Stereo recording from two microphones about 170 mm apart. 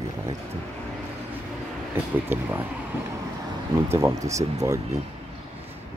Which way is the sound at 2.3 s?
10° right (ahead or behind).